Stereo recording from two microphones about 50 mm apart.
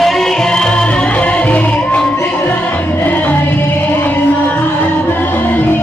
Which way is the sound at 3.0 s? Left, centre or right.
Left.